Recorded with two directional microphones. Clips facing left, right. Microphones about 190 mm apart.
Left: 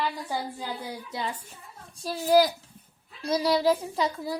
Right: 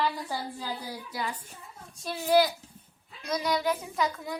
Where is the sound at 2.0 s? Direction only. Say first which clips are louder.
Left 2 dB; 35° left (ahead or behind).